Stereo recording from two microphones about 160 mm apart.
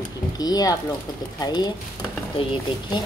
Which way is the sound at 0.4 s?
25° left (ahead or behind).